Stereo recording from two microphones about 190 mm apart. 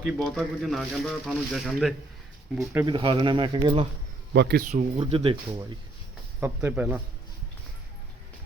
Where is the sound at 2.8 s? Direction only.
25° right (ahead or behind).